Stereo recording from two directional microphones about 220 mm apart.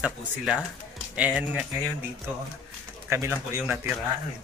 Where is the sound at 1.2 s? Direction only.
5° right (ahead or behind).